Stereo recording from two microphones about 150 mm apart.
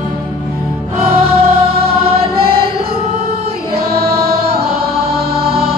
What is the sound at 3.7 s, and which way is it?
Music, 90° right.